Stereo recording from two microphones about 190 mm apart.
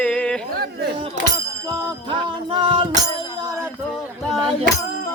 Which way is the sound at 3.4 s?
15° right (ahead or behind).